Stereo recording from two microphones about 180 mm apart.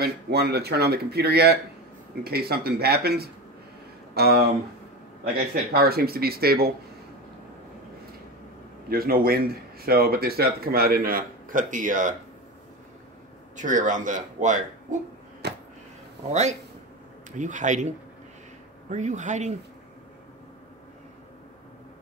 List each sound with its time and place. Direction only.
0.0 s speech: 65° right (ahead or behind)
5.7 s speech: 60° right (ahead or behind)
8.8 s speech: 55° right (ahead or behind)
13.6 s speech: 45° right (ahead or behind)
15.4 s a sound: 65° right (ahead or behind)
16.3 s speech: 40° right (ahead or behind)